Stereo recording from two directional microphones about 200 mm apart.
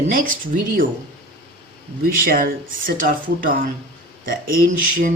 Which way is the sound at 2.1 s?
45° right (ahead or behind).